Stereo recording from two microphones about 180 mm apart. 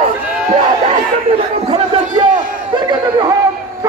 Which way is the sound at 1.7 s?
35° right (ahead or behind).